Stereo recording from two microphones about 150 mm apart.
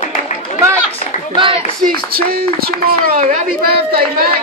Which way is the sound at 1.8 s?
80° right.